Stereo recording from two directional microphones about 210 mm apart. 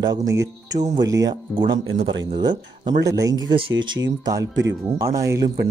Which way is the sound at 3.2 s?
20° right (ahead or behind).